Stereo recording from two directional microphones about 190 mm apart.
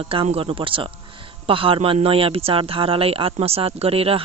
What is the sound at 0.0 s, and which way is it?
Speech, 30° right (ahead or behind).